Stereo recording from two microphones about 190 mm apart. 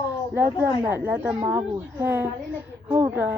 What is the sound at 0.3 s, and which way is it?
A woman's voice, 10° right (ahead or behind).